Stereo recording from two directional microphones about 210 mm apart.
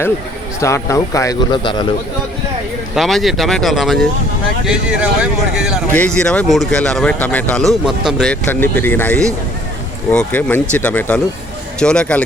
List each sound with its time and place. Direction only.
0.6 s speech: 15° left (ahead or behind)
2.9 s speech: centre (ahead or behind)